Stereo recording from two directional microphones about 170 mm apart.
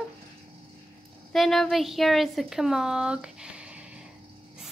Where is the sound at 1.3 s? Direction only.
Centre (ahead or behind).